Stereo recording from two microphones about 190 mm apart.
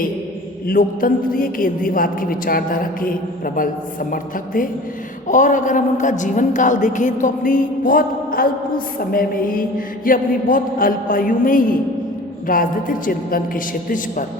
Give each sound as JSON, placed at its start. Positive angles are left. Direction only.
{"t": 0.7, "sound": "a woman's voice", "side_deg": 50}